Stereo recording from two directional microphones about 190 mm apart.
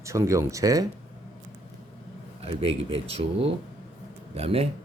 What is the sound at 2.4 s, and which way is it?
A man's voice, 30° right (ahead or behind).